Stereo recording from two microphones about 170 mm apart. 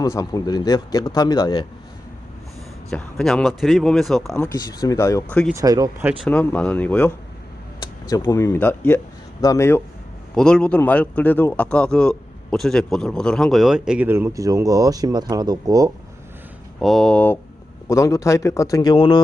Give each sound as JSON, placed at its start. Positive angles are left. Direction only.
{"t": 0.0, "sound": "speech", "side_deg": 20}
{"t": 2.9, "sound": "speech", "side_deg": 5}
{"t": 4.4, "sound": "speech", "side_deg": 20}
{"t": 5.3, "sound": "speech", "side_deg": 5}
{"t": 5.5, "sound": "speech", "side_deg": -20}
{"t": 6.2, "sound": "speech", "side_deg": 10}
{"t": 7.8, "sound": "speech", "side_deg": 20}
{"t": 16.8, "sound": "speech", "side_deg": 0}
{"t": 17.8, "sound": "speech", "side_deg": 20}